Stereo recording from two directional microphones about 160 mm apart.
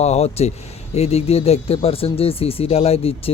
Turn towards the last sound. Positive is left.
turn(degrees=40)  # may be behind; listen again after turning